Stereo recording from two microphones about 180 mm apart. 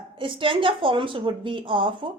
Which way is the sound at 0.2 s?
30° right (ahead or behind).